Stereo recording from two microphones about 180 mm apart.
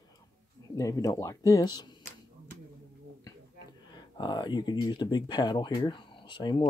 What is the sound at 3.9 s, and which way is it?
Speech, 25° left (ahead or behind).